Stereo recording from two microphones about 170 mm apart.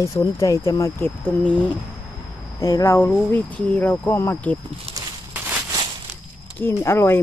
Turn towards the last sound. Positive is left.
turn(degrees=15)  # may be behind; listen again after turning